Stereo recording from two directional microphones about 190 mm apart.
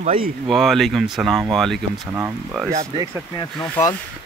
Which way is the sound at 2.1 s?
10° right (ahead or behind).